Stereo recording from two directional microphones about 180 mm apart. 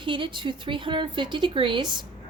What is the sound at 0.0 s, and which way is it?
A woman's voice, 25° right (ahead or behind).